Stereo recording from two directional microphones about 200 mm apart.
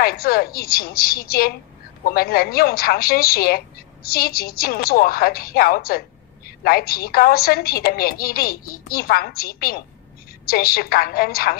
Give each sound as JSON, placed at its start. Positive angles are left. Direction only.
{"t": 0.0, "sound": "a woman's voice", "side_deg": 50}